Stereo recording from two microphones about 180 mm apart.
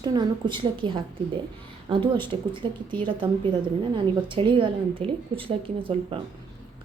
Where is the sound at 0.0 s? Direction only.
25° right (ahead or behind).